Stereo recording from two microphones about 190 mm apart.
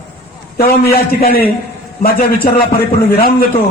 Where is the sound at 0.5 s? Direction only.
55° left (ahead or behind).